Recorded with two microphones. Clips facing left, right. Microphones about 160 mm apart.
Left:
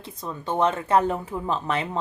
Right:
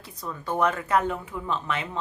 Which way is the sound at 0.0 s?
25° left (ahead or behind).